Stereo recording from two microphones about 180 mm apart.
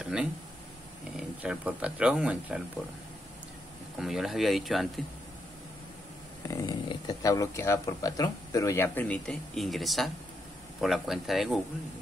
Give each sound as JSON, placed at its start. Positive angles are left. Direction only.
{"t": 0.0, "sound": "a sound", "side_deg": -5}
{"t": 1.1, "sound": "speech", "side_deg": -5}
{"t": 4.0, "sound": "speech", "side_deg": 0}
{"t": 6.4, "sound": "speech", "side_deg": 20}